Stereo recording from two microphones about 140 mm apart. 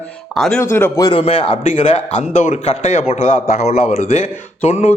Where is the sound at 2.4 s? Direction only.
55° left (ahead or behind).